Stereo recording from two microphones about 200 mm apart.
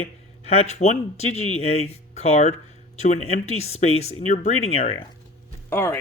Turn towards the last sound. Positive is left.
turn(degrees=10)  # may be behind; listen again after turning